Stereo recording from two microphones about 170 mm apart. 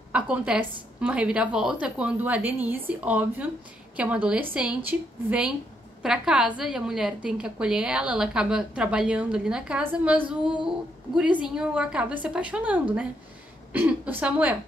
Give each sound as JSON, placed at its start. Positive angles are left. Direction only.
{"t": 0.1, "sound": "a woman's voice", "side_deg": -10}